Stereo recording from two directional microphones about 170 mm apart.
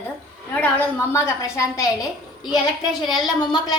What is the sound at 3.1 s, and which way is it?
Speech, 25° left (ahead or behind).